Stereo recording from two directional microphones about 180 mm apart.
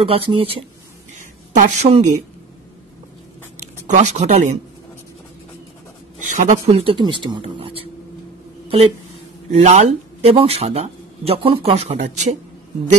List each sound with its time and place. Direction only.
0.0 s speech: 30° right (ahead or behind)
3.8 s speech: 40° right (ahead or behind)
6.2 s speech: 45° right (ahead or behind)
9.5 s speech: 40° right (ahead or behind)